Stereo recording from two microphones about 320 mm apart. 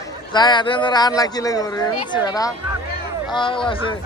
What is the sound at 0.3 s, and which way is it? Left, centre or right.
A man's voice, centre.